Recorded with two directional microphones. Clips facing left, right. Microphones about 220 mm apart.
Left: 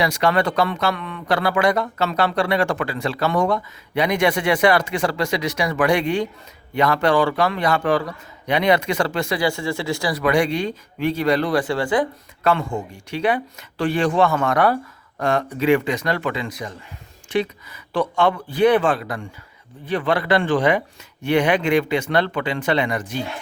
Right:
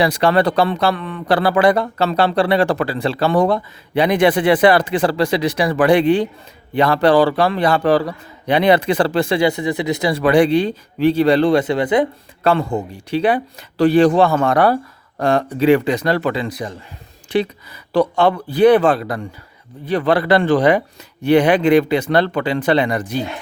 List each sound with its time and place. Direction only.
0.0 s speech: 30° right (ahead or behind)
12.4 s speech: 35° right (ahead or behind)